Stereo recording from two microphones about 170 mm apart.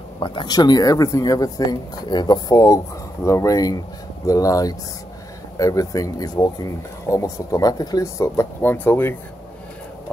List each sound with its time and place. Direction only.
0.2 s speech: 25° left (ahead or behind)